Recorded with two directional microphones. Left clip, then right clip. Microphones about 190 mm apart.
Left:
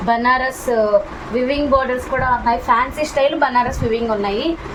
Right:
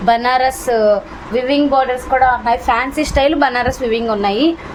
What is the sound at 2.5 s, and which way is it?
A woman's voice, 65° right (ahead or behind).